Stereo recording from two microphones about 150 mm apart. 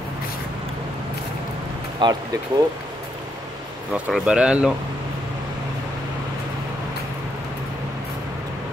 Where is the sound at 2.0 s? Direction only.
25° right (ahead or behind).